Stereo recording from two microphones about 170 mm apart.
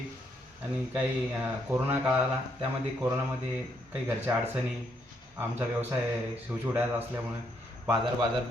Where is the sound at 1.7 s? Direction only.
10° right (ahead or behind).